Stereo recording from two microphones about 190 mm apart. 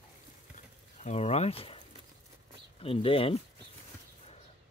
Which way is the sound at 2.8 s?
30° left (ahead or behind).